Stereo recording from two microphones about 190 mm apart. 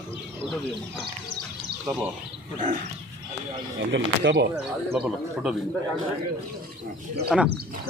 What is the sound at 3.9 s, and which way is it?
Speech, 70° right (ahead or behind).